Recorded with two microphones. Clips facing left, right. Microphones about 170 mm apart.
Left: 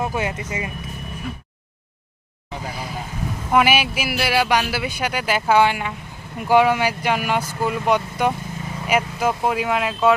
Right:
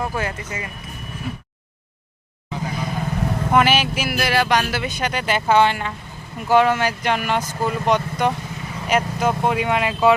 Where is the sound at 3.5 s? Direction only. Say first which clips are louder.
Even; 10° left (ahead or behind).